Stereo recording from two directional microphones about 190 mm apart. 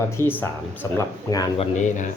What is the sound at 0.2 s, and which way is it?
Speech, 10° left (ahead or behind).